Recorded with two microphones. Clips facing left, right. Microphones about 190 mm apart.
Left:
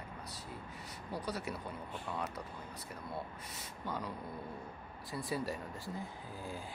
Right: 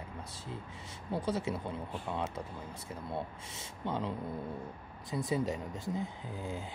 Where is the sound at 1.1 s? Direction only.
25° right (ahead or behind).